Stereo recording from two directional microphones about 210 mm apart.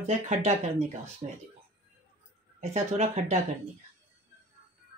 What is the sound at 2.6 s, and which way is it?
Speech, 30° right (ahead or behind).